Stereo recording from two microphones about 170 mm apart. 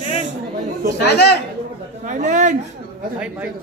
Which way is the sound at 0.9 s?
80° left.